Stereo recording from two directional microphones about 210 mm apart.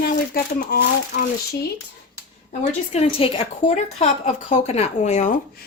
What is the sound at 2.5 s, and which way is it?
A woman's voice, 30° left (ahead or behind).